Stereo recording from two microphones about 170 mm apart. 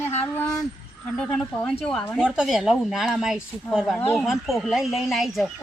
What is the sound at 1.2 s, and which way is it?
A woman's voice, 5° left (ahead or behind).